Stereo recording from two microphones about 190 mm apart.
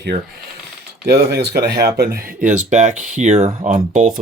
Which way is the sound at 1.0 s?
55° right (ahead or behind).